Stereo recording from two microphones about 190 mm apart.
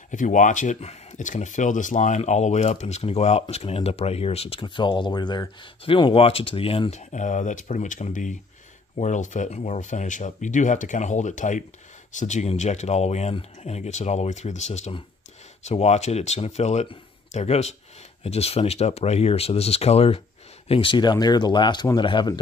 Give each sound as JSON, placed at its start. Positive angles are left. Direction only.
{"t": 0.1, "sound": "speech", "side_deg": 40}